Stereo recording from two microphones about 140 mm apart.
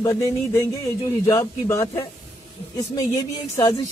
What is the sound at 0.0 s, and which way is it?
Speech, 25° left (ahead or behind).